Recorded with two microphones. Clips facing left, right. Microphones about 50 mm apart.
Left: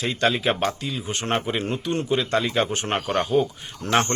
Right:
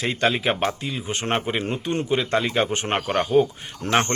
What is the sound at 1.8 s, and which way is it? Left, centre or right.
Speech, right.